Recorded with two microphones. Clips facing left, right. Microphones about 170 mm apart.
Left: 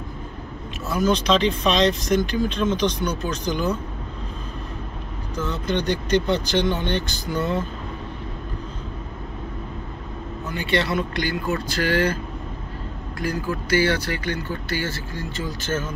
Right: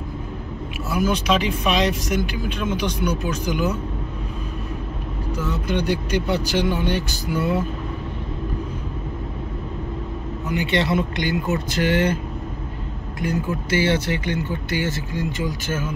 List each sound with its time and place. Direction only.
0.8 s speech: 10° right (ahead or behind)
5.3 s speech: 10° right (ahead or behind)
10.5 s speech: 20° right (ahead or behind)
13.2 s speech: 25° right (ahead or behind)